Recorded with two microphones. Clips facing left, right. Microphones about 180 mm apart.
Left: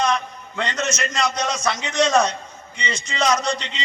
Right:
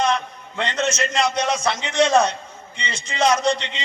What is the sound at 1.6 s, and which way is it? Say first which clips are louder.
A man's voice: left 1 dB; 30° right (ahead or behind).